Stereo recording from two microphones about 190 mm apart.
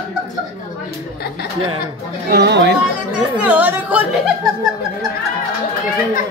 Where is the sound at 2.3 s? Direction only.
65° right (ahead or behind).